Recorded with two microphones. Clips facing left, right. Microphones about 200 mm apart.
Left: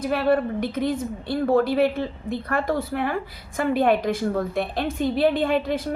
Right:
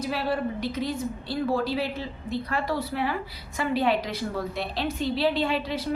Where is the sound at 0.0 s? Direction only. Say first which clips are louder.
Left 6 dB; 55° left (ahead or behind).